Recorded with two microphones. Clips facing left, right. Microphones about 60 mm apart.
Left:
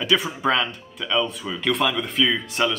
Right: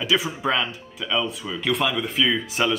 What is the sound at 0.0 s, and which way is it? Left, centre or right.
Speech, centre.